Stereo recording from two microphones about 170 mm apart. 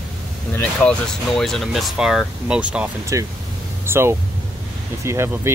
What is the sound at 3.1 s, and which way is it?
Speech, 20° right (ahead or behind).